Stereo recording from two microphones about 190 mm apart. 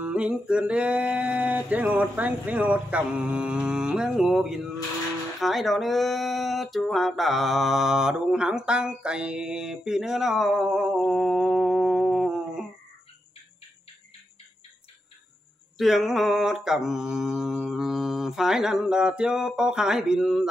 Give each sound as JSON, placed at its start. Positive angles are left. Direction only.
{"t": 0.0, "sound": "male singing", "side_deg": -5}
{"t": 5.4, "sound": "speech", "side_deg": 0}
{"t": 15.8, "sound": "speech", "side_deg": 0}